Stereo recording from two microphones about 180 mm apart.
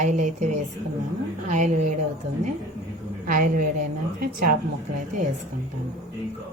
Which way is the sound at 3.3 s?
50° right (ahead or behind).